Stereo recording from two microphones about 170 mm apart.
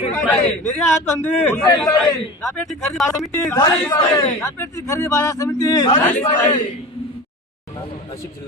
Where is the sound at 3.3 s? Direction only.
15° left (ahead or behind).